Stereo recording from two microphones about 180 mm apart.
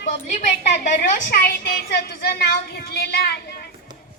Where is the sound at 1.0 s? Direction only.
55° left (ahead or behind).